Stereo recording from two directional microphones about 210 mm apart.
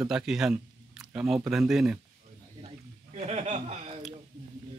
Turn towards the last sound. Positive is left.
turn(degrees=-30)  # may be behind; listen again after turning